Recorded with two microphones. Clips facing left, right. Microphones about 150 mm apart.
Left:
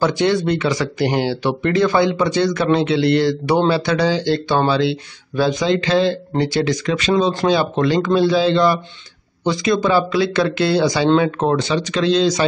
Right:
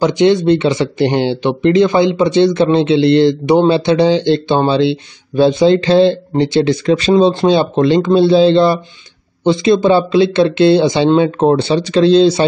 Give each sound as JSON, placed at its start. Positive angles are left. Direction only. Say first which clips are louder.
{"t": 0.0, "sound": "speech", "louder": "right 6 dB", "side_deg": -20}